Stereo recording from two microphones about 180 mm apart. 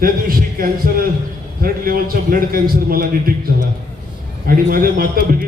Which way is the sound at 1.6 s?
55° right (ahead or behind).